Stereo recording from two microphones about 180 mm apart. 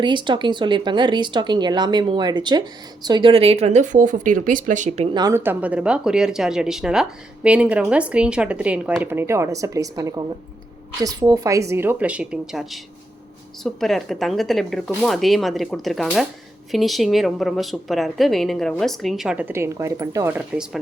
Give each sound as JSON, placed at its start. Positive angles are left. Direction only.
{"t": 0.0, "sound": "speech", "side_deg": -25}
{"t": 5.1, "sound": "a woman's voice", "side_deg": -15}